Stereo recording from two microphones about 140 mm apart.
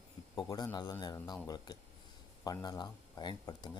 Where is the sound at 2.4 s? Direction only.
25° left (ahead or behind).